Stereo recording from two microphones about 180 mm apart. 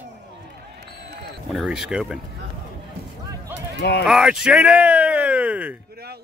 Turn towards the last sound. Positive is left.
turn(degrees=-60)  # may be behind; listen again after turning